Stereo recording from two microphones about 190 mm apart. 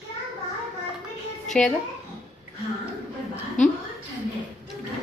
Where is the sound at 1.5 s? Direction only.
5° left (ahead or behind).